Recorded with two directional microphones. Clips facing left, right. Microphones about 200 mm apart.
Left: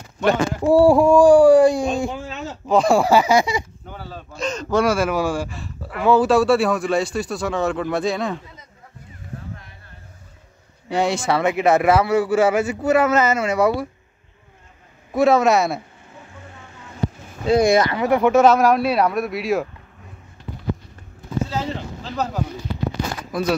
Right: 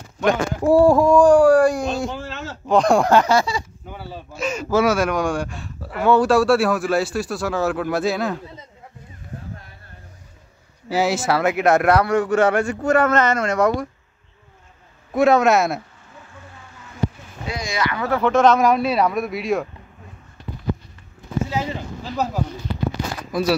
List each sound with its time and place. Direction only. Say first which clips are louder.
0.2 s speech: left 1 dB; centre (ahead or behind)
0.8 s a sound: left 2 dB; 10° left (ahead or behind)
2.1 s speech: left 1 dB; centre (ahead or behind); by 3.6 s 15° left (ahead or behind)
3.8 s speech: right 1 dB; 5° right (ahead or behind)
10.9 s speech: even; 5° right (ahead or behind)
15.1 s speech: even; centre (ahead or behind)
17.6 s speech: left 11 dB; 60° left (ahead or behind)
17.9 s speech: left 3 dB; 15° left (ahead or behind)
22.1 s speech: right 1 dB; 5° right (ahead or behind)